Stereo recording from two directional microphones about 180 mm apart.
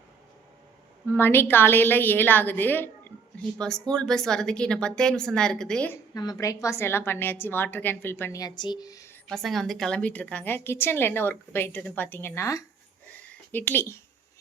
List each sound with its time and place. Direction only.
1.1 s a woman's voice: 10° left (ahead or behind)
6.1 s a woman's voice: 20° left (ahead or behind)
9.3 s a woman's voice: centre (ahead or behind)